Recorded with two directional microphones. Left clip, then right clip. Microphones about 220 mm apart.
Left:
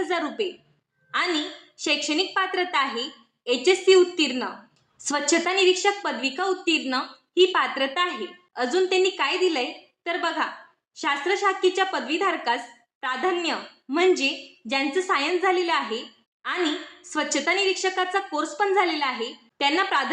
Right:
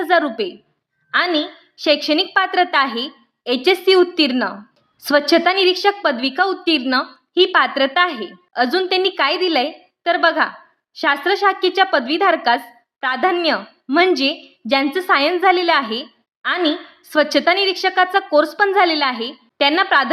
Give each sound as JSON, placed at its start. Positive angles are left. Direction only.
{"t": 0.0, "sound": "a woman's voice", "side_deg": -45}